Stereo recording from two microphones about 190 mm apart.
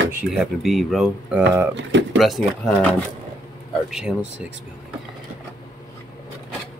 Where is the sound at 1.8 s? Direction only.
75° right (ahead or behind).